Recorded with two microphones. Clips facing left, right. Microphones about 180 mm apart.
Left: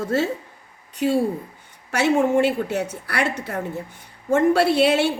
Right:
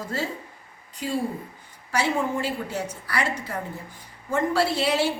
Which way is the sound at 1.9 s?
75° left (ahead or behind).